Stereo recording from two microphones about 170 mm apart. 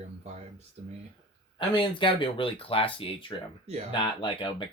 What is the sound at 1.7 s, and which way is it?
Speech, 30° left (ahead or behind).